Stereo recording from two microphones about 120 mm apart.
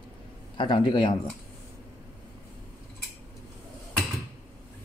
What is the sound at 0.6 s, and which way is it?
Speech, 40° left (ahead or behind).